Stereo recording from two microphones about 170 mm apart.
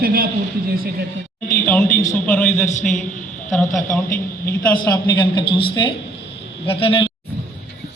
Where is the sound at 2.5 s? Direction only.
45° left (ahead or behind).